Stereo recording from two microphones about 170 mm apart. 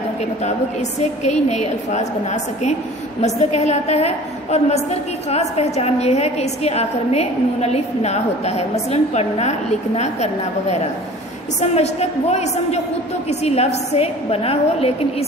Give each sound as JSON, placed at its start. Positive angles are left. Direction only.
{"t": 0.2, "sound": "a woman's voice", "side_deg": 40}